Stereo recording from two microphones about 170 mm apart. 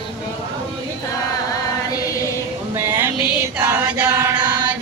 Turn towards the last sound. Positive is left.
turn(degrees=-15)  # may be behind; listen again after turning